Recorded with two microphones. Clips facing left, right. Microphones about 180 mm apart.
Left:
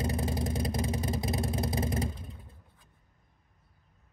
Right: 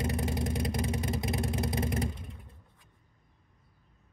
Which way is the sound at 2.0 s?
Centre (ahead or behind).